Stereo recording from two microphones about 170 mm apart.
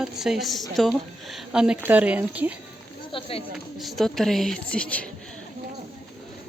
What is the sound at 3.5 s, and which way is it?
A woman's voice, centre (ahead or behind).